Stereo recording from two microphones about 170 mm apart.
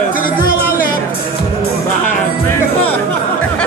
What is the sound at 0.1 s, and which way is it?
Music, 55° left (ahead or behind).